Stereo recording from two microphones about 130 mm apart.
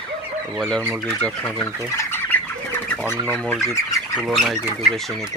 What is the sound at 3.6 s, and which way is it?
Speech, 25° left (ahead or behind).